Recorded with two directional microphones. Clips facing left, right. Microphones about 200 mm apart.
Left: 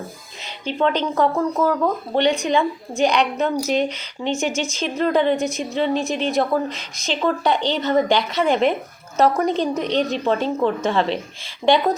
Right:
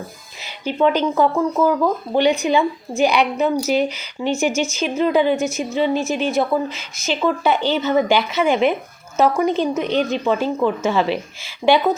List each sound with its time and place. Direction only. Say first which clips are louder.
0.4 s speech: right 3 dB; 5° right (ahead or behind)
4.4 s speech: right 3 dB; 30° left (ahead or behind)
4.9 s speech: right 1 dB; 5° right (ahead or behind)